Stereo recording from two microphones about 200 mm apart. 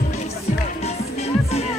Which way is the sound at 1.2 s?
30° left (ahead or behind).